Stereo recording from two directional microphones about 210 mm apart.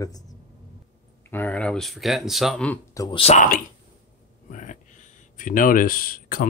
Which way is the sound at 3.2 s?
35° left (ahead or behind).